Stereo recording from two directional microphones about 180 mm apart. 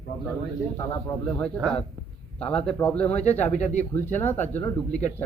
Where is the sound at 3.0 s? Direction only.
40° left (ahead or behind).